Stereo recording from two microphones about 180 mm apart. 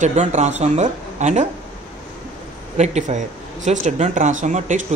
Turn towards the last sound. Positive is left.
turn(degrees=-45)  # may be behind; listen again after turning